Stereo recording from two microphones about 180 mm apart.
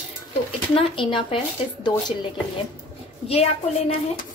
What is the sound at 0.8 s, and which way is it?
Speech, 25° left (ahead or behind).